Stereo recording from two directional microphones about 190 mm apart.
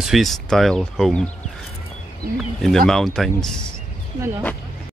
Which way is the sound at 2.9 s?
Centre (ahead or behind).